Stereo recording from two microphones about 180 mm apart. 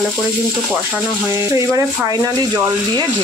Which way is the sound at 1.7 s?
20° right (ahead or behind).